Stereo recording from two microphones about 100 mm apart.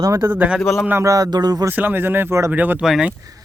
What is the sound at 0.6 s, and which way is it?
Speech, 20° left (ahead or behind).